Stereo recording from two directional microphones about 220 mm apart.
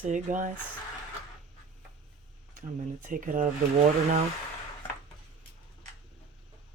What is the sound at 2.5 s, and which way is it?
Speech, 35° right (ahead or behind).